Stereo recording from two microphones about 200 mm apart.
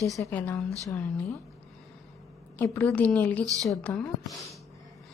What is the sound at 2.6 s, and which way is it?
A woman's voice, 10° left (ahead or behind).